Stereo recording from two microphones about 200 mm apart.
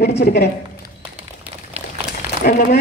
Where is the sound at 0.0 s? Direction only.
55° left (ahead or behind).